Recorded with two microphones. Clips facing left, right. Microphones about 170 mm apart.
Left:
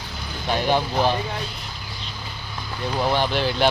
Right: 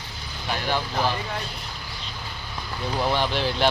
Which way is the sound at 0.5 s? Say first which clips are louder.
Left 5 dB; 20° left (ahead or behind).